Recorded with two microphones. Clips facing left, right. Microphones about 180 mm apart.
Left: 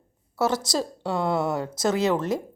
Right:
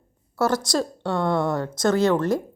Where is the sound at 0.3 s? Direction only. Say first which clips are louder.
Right 2 dB; 5° left (ahead or behind).